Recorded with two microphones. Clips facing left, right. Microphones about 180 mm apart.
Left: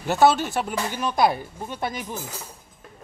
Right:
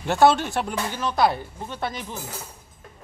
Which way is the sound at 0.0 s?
Centre (ahead or behind).